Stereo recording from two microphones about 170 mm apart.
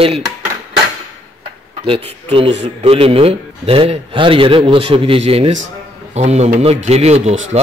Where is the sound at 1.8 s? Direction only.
30° right (ahead or behind).